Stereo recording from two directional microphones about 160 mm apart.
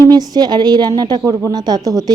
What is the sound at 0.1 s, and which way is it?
A woman's voice, 25° right (ahead or behind).